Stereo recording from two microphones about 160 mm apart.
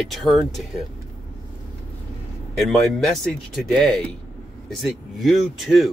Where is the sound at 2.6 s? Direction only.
Centre (ahead or behind).